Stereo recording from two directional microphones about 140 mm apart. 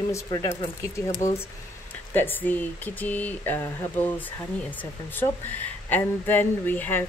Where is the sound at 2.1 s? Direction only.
15° left (ahead or behind).